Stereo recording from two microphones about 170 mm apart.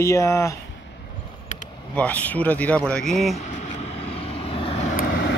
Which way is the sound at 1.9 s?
10° left (ahead or behind).